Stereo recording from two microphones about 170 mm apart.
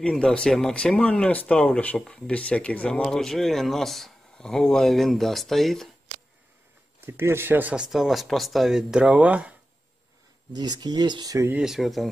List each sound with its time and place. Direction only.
0.0 s speech: 5° left (ahead or behind)
7.1 s speech: 15° right (ahead or behind)
10.5 s speech: 25° right (ahead or behind)
11.5 s speech: 5° right (ahead or behind)